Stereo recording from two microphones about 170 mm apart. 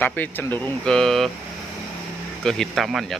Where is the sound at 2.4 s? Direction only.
Centre (ahead or behind).